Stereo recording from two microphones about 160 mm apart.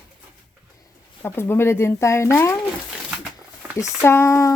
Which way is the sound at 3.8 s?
15° left (ahead or behind).